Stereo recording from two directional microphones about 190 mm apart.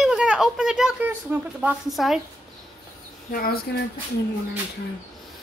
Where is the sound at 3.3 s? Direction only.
50° left (ahead or behind).